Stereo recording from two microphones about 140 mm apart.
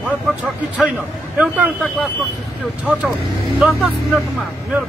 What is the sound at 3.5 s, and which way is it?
Speech, centre (ahead or behind).